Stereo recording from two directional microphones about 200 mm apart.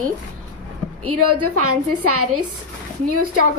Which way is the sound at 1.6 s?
90° right.